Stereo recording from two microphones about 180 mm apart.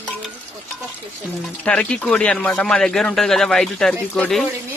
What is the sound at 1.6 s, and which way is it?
A man's voice, 5° left (ahead or behind).